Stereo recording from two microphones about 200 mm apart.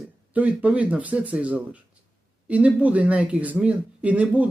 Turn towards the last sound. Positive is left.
turn(degrees=-5)  # may be behind; listen again after turning